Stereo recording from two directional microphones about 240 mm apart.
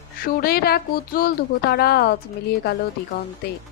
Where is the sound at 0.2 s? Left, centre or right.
Left.